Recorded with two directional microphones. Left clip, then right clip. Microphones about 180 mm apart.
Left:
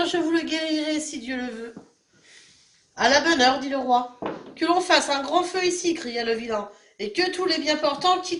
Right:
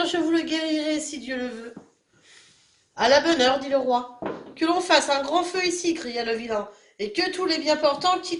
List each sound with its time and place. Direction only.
0.0 s speech: 40° right (ahead or behind)
2.9 s speech: 45° right (ahead or behind)